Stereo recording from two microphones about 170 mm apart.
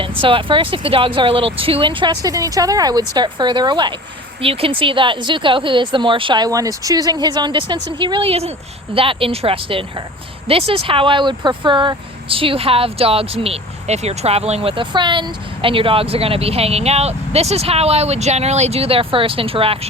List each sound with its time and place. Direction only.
0.2 s speech: 30° right (ahead or behind)